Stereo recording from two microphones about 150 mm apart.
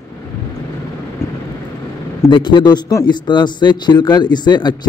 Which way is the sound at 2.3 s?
30° left (ahead or behind).